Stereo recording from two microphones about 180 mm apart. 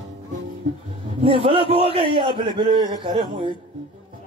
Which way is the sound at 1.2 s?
30° right (ahead or behind).